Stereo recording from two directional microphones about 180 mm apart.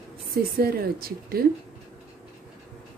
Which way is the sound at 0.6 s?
55° right (ahead or behind).